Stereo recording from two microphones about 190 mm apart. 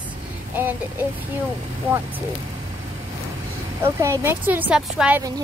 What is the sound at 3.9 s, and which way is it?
Speech, 15° right (ahead or behind).